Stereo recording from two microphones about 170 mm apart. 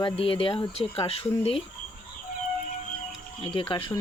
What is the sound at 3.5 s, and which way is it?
Speech, 30° left (ahead or behind).